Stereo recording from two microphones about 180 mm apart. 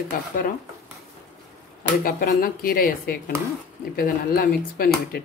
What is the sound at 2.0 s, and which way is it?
A woman's voice, 50° left (ahead or behind).